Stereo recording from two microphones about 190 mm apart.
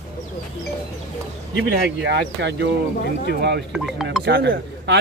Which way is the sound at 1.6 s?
65° right (ahead or behind).